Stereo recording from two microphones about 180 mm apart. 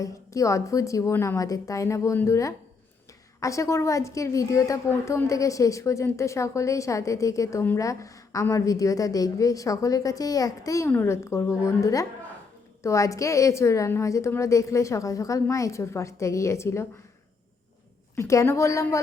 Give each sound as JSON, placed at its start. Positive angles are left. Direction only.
{"t": 0.0, "sound": "a woman's voice", "side_deg": 15}
{"t": 18.2, "sound": "a woman's voice", "side_deg": 15}